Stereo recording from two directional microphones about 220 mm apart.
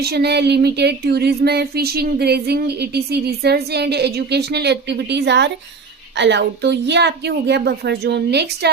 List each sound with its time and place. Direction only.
0.0 s speech: 45° right (ahead or behind)